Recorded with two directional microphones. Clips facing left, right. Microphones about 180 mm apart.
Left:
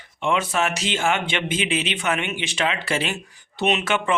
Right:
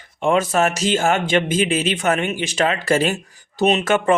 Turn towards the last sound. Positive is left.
turn(degrees=-45)  # may be behind; listen again after turning